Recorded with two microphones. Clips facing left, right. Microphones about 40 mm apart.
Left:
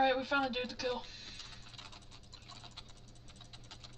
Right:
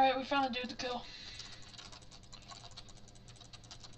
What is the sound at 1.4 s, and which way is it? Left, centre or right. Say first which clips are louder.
Typing: left 1 dB; left.